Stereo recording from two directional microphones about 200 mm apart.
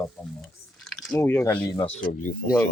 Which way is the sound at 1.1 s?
10° left (ahead or behind).